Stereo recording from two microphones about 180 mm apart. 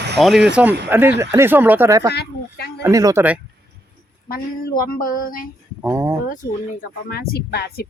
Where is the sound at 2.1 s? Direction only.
65° left (ahead or behind).